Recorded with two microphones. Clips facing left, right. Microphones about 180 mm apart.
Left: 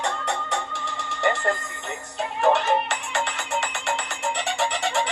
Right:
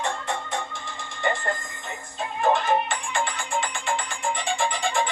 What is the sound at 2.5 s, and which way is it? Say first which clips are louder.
Music: left 1 dB; 75° left (ahead or behind).